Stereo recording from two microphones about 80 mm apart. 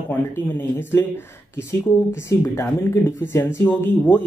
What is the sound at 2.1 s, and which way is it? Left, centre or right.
Speech, left.